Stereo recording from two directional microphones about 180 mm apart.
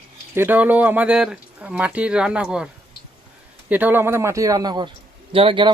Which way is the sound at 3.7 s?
10° right (ahead or behind).